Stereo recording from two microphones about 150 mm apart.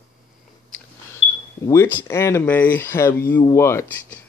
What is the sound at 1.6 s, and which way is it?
Speech, 20° left (ahead or behind).